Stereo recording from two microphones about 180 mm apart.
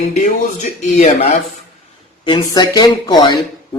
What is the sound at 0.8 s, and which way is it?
Speech, 40° left (ahead or behind).